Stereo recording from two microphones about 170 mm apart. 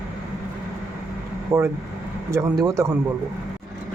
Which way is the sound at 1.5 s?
15° right (ahead or behind).